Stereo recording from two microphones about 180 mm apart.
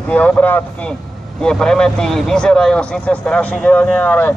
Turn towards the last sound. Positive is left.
turn(degrees=10)  # may be behind; listen again after turning